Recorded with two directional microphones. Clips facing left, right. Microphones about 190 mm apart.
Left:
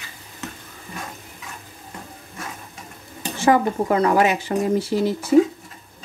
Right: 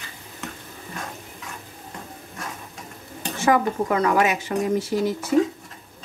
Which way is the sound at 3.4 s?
30° left (ahead or behind).